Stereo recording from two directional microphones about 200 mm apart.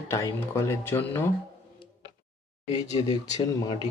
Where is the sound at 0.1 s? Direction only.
15° left (ahead or behind).